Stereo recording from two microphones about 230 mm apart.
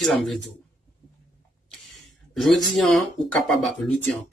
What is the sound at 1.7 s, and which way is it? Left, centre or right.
Speech, centre.